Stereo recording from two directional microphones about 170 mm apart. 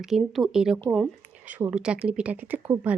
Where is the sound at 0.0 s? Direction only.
Centre (ahead or behind).